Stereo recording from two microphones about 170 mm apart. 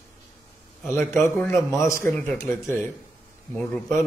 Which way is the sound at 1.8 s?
15° left (ahead or behind).